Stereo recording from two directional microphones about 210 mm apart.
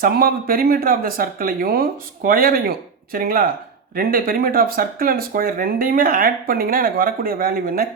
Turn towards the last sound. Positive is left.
turn(degrees=-45)  # may be behind; listen again after turning